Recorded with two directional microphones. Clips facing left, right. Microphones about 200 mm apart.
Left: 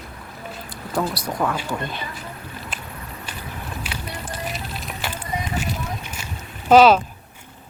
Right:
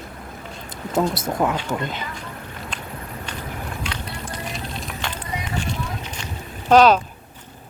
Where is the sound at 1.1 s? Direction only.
25° right (ahead or behind).